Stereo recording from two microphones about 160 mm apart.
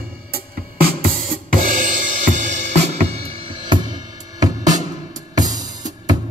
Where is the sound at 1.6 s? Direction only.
55° right (ahead or behind).